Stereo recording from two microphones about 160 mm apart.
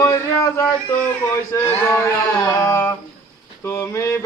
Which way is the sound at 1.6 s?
15° left (ahead or behind).